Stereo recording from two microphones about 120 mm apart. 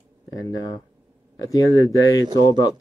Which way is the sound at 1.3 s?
30° left (ahead or behind).